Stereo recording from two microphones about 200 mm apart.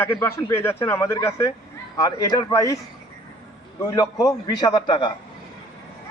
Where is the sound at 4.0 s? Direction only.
20° left (ahead or behind).